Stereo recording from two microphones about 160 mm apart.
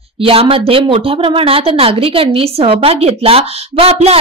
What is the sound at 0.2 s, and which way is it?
A woman's voice, 35° right (ahead or behind).